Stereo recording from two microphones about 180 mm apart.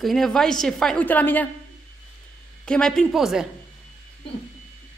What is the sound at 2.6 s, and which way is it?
Speech, 5° left (ahead or behind).